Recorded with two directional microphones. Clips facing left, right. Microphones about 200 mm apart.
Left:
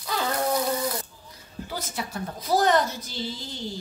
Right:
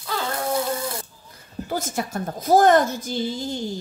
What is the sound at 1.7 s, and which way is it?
A woman's voice, 50° right (ahead or behind).